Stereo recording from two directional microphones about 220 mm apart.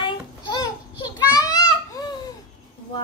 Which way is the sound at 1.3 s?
15° left (ahead or behind).